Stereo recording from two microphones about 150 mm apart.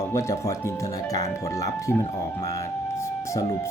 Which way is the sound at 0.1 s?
20° left (ahead or behind).